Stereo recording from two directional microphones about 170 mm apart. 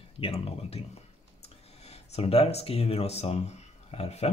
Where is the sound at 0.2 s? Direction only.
35° left (ahead or behind).